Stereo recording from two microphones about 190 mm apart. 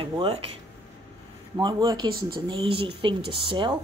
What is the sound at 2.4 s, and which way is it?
A woman's voice, 30° right (ahead or behind).